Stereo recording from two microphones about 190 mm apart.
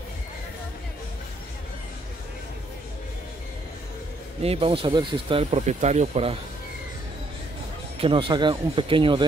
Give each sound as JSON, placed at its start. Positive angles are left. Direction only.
{"t": 4.4, "sound": "speech", "side_deg": -30}
{"t": 8.0, "sound": "speech", "side_deg": -25}